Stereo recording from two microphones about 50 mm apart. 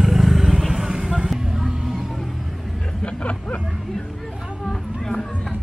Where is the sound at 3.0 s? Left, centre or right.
Left.